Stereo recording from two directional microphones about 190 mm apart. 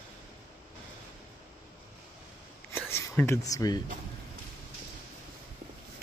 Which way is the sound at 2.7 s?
10° left (ahead or behind).